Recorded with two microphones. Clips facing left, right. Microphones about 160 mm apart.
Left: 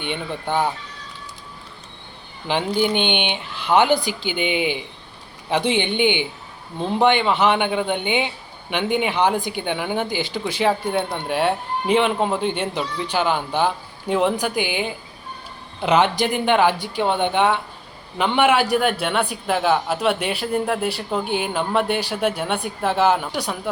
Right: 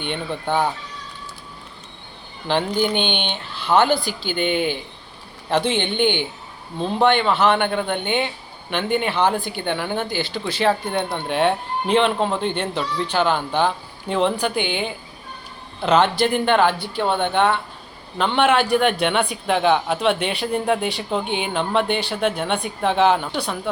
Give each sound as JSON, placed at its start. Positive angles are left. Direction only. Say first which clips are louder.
{"t": 0.0, "sound": "speech", "louder": "right 1 dB", "side_deg": 10}
{"t": 2.5, "sound": "a man's voice", "louder": "even", "side_deg": 10}